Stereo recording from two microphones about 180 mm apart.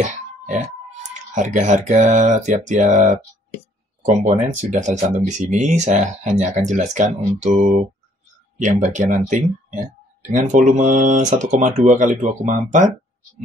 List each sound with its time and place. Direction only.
1.3 s speech: 45° right (ahead or behind)
4.2 s speech: 40° right (ahead or behind)